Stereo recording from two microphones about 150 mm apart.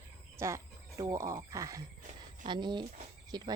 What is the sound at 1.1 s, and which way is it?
Speech, 20° right (ahead or behind).